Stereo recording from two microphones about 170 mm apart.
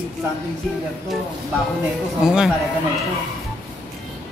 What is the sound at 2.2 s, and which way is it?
Speech, 5° right (ahead or behind).